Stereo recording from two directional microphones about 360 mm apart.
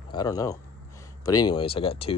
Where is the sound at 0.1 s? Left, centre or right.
Centre.